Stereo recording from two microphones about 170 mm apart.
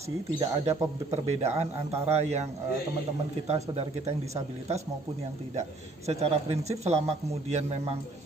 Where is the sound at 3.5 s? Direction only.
40° right (ahead or behind).